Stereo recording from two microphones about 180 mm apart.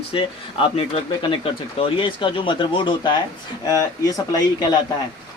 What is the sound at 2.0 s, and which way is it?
Speech, 30° left (ahead or behind).